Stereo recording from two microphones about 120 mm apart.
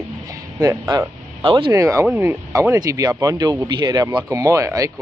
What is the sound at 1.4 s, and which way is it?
Speech, 45° right (ahead or behind).